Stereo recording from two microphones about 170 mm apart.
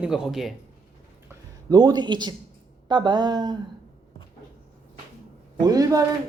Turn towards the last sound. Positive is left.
turn(degrees=-20)  # may be behind; listen again after turning